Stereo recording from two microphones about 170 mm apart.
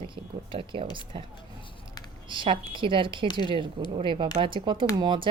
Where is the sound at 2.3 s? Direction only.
30° right (ahead or behind).